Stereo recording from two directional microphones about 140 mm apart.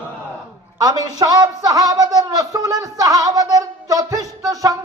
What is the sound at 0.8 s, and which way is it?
Speech, 25° right (ahead or behind).